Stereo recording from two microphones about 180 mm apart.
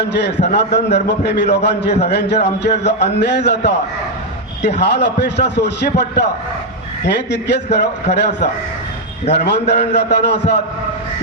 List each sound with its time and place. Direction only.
0.0 s a man's voice: 70° left (ahead or behind)
4.6 s a man's voice: 70° left (ahead or behind)